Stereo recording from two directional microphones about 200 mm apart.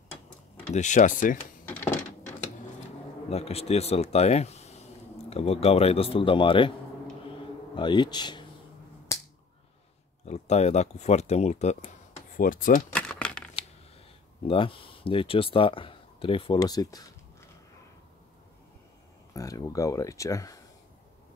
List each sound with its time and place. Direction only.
0.7 s speech: 40° left (ahead or behind)
3.3 s a man's voice: 30° left (ahead or behind)
7.7 s a man's voice: 25° left (ahead or behind)
10.2 s speech: 35° left (ahead or behind)
12.9 s crumpling: 5° left (ahead or behind)
14.4 s speech: 25° left (ahead or behind)
19.3 s speech: 15° left (ahead or behind)